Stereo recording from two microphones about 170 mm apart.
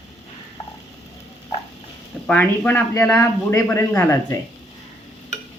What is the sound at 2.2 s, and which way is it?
Speech, 10° left (ahead or behind).